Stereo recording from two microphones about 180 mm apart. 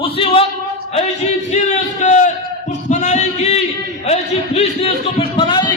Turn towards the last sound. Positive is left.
turn(degrees=25)  # may be behind; listen again after turning